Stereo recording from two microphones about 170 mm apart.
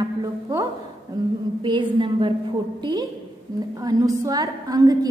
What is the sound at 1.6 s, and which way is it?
Speech, 30° right (ahead or behind).